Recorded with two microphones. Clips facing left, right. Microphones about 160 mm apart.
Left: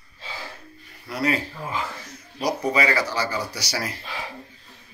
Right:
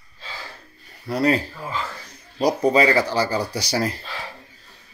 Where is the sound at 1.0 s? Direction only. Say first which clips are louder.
Right 5 dB; 30° right (ahead or behind).